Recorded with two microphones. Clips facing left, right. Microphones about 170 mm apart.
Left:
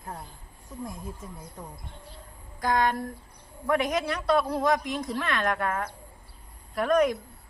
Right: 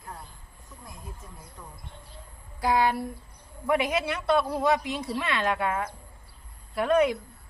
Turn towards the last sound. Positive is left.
turn(degrees=-5)  # may be behind; listen again after turning